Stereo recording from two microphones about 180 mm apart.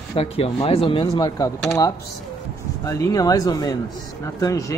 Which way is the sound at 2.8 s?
20° left (ahead or behind).